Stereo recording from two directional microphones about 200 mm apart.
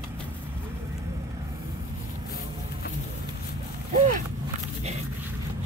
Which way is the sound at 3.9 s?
40° right (ahead or behind).